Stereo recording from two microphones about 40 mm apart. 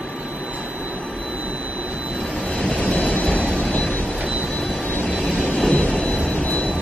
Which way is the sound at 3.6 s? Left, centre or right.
Centre.